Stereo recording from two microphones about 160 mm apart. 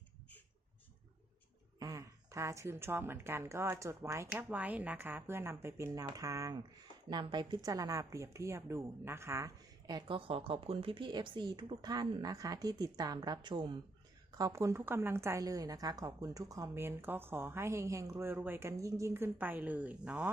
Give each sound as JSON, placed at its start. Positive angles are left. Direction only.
{"t": 1.8, "sound": "a woman's voice", "side_deg": -20}